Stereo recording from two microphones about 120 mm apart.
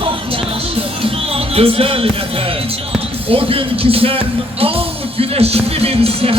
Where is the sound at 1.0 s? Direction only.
55° right (ahead or behind).